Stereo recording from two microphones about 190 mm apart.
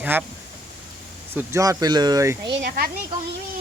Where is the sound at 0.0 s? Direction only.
10° right (ahead or behind).